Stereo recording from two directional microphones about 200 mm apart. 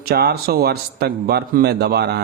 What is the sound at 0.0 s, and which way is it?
Speech, 55° right (ahead or behind).